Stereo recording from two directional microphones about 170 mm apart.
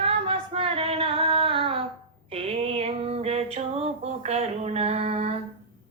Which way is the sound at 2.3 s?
35° right (ahead or behind).